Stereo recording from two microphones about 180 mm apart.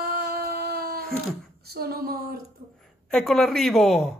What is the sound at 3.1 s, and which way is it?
Speech, centre (ahead or behind).